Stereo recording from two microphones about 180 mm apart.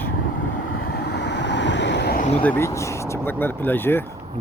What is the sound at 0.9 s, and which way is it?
Vehicle, 65° left (ahead or behind).